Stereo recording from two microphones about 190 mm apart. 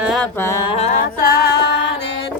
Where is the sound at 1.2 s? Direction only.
55° left (ahead or behind).